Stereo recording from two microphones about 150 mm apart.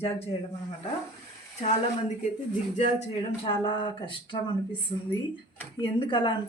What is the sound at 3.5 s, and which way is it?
Speech, 35° left (ahead or behind).